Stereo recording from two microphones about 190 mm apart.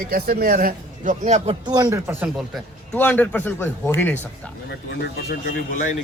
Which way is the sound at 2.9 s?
10° left (ahead or behind).